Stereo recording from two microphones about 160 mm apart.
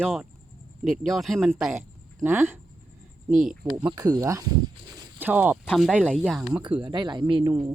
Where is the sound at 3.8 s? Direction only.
25° right (ahead or behind); by 6.5 s centre (ahead or behind).